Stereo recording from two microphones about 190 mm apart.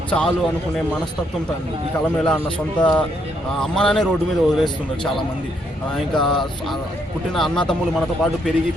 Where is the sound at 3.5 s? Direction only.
5° left (ahead or behind).